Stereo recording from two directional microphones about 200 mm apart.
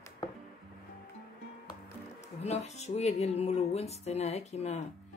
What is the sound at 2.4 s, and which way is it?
Speech, 35° left (ahead or behind).